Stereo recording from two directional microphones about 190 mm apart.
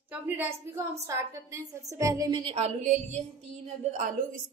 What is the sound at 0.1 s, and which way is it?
A woman's voice, 10° right (ahead or behind).